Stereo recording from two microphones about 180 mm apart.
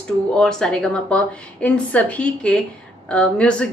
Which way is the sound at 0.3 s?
5° left (ahead or behind).